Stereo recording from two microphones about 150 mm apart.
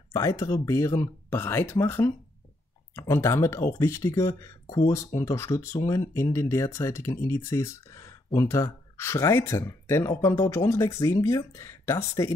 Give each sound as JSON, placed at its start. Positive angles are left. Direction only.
{"t": 0.1, "sound": "speech", "side_deg": 20}